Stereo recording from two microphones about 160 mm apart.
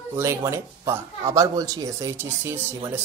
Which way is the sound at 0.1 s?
15° right (ahead or behind).